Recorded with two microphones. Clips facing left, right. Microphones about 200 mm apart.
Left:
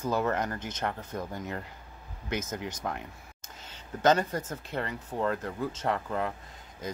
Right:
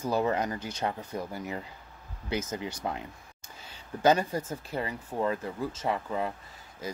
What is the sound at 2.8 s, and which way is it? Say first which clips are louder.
Speech: right 1 dB; 15° right (ahead or behind).